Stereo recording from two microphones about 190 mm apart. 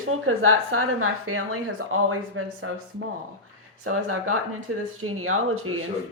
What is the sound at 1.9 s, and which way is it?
Speech, 90° right.